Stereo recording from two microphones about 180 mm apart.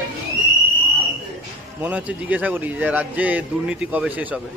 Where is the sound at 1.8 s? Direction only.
10° right (ahead or behind).